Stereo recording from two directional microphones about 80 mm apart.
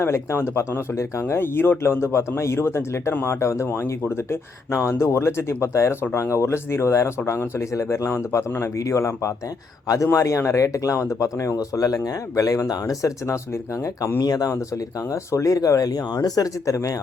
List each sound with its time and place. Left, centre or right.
0.0 s speech: left
14.2 s speech: left